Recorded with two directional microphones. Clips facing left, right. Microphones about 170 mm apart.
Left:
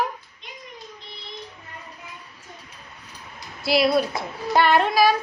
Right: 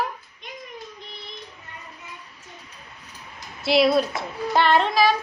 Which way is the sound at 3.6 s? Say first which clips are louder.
Right 1 dB; 5° left (ahead or behind).